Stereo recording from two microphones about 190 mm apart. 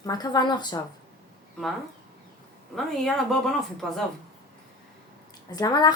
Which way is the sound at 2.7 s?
Centre (ahead or behind).